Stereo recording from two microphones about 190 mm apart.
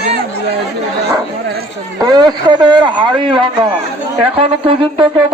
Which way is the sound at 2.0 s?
20° right (ahead or behind).